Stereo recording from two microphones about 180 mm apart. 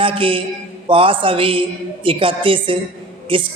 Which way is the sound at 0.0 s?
30° right (ahead or behind).